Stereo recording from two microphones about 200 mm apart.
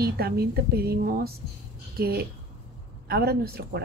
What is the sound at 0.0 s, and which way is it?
A woman's voice, 50° right (ahead or behind).